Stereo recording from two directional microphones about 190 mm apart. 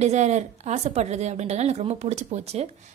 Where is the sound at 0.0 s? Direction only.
35° right (ahead or behind).